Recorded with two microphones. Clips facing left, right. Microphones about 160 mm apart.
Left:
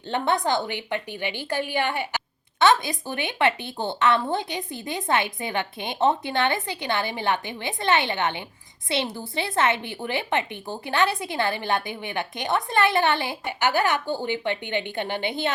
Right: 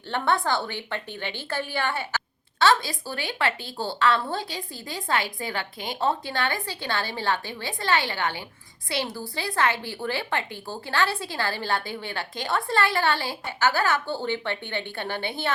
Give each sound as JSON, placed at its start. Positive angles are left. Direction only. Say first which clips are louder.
{"t": 0.1, "sound": "a woman's voice", "louder": "left 1 dB", "side_deg": 20}